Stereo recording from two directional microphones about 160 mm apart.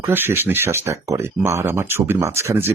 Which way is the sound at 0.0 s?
15° right (ahead or behind).